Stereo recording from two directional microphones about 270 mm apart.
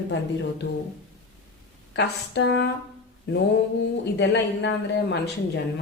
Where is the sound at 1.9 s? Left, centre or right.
Left.